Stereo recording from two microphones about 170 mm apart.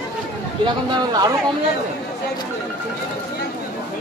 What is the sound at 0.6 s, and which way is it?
Speech, 25° right (ahead or behind).